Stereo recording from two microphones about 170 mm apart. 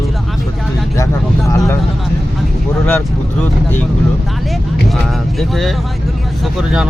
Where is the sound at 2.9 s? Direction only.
10° left (ahead or behind).